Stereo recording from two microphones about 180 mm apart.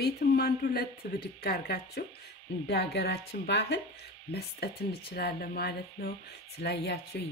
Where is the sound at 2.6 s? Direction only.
70° left (ahead or behind).